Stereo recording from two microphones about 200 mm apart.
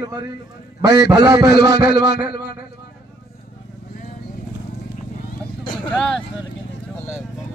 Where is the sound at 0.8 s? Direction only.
55° left (ahead or behind).